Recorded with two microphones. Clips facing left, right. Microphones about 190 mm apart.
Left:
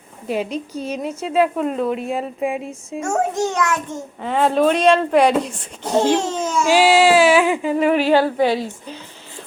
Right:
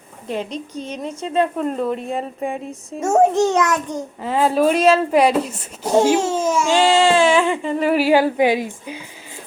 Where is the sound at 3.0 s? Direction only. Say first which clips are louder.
Right 6 dB; 25° right (ahead or behind).